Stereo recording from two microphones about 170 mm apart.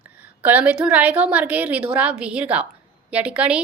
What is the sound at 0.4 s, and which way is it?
A woman's voice, 10° right (ahead or behind).